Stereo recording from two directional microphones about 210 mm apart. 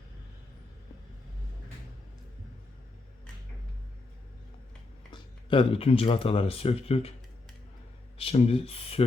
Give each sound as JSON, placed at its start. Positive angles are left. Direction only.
{"t": 5.1, "sound": "speech", "side_deg": 25}
{"t": 8.2, "sound": "speech", "side_deg": 25}